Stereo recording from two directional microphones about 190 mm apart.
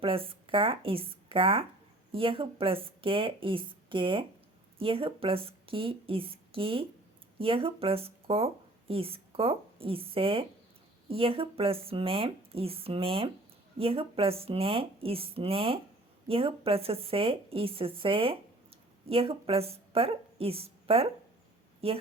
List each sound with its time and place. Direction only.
0.0 s a woman's voice: 30° right (ahead or behind)